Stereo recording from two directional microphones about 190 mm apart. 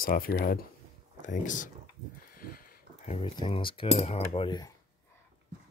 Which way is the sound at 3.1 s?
25° left (ahead or behind).